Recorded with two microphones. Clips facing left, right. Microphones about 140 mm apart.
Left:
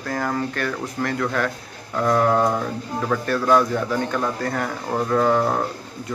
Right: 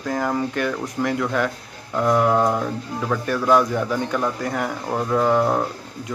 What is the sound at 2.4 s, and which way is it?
Music, centre (ahead or behind).